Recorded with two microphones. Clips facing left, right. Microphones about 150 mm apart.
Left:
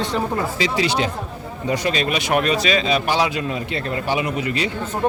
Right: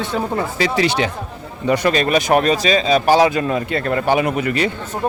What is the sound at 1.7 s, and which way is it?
Speech, 50° right (ahead or behind).